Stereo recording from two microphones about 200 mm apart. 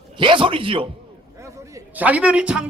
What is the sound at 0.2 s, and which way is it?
Speech, 25° right (ahead or behind).